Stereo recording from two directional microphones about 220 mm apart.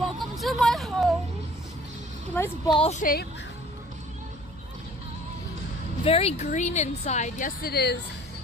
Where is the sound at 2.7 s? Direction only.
30° left (ahead or behind).